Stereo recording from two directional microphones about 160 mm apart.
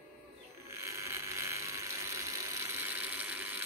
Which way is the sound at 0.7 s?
20° right (ahead or behind).